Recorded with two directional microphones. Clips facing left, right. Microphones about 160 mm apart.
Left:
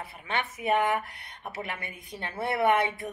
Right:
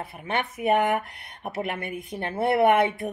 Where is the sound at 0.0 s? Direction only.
50° right (ahead or behind).